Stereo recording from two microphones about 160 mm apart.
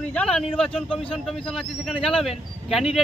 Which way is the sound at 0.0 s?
5° left (ahead or behind).